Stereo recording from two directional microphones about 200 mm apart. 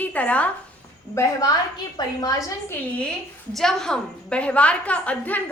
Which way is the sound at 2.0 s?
20° left (ahead or behind).